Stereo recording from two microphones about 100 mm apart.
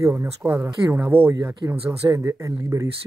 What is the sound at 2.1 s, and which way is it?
Speech, 35° right (ahead or behind).